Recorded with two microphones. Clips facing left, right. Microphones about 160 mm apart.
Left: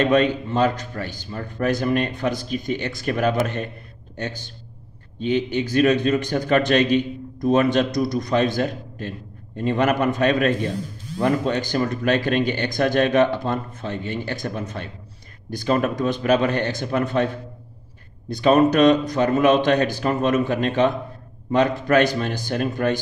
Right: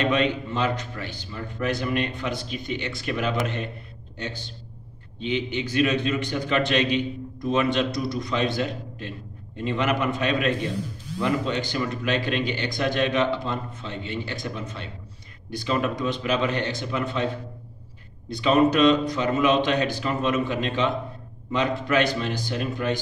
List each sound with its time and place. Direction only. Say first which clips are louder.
0.0 s a man's voice: left 5 dB; 45° left (ahead or behind)
5.2 s a man's voice: left 5 dB; 45° left (ahead or behind)
18.3 s a man's voice: left 3 dB; 45° left (ahead or behind)